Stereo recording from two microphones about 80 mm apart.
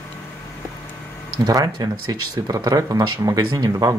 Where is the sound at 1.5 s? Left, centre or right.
Right.